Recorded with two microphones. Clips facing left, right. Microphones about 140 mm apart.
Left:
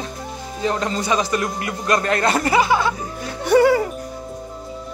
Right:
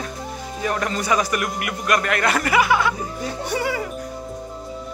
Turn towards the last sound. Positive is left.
turn(degrees=40)  # may be behind; listen again after turning